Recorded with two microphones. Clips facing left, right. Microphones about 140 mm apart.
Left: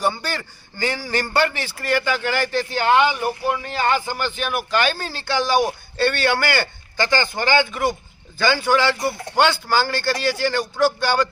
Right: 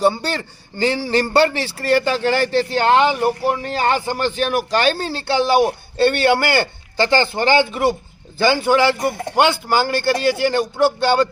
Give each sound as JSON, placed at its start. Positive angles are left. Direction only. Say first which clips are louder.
{"t": 0.0, "sound": "a man's voice", "louder": "right 5 dB", "side_deg": -30}